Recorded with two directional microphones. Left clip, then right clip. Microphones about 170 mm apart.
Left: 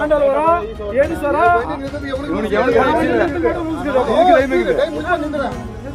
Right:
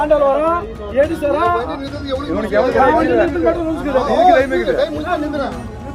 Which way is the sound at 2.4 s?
35° left (ahead or behind).